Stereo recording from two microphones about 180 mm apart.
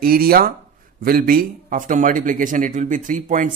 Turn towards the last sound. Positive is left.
turn(degrees=-45)  # may be behind; listen again after turning